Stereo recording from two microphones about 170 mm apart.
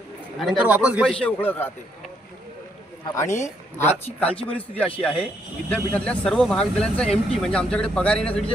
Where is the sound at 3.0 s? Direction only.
15° left (ahead or behind).